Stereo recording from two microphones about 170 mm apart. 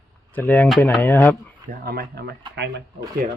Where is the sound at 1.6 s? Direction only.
65° right (ahead or behind).